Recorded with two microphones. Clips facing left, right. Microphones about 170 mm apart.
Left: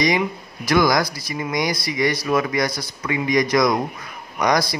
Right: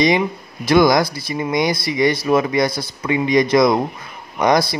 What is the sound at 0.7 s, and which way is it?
Speech, 25° right (ahead or behind).